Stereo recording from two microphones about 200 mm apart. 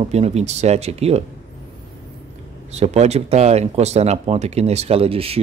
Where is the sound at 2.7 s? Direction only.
35° right (ahead or behind).